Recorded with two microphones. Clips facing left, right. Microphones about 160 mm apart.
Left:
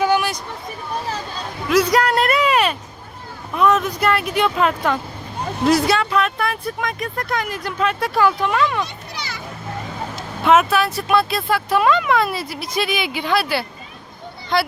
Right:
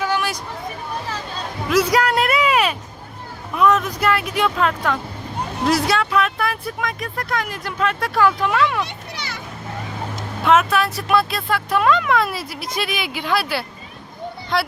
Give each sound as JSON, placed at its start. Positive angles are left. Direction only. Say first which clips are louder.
{"t": 1.7, "sound": "a sound", "louder": "left 1 dB", "side_deg": 0}
{"t": 3.5, "sound": "speech", "louder": "even", "side_deg": 0}
{"t": 9.1, "sound": "children playing", "louder": "left 1 dB", "side_deg": -55}
{"t": 10.4, "sound": "speech", "louder": "left 1 dB", "side_deg": 5}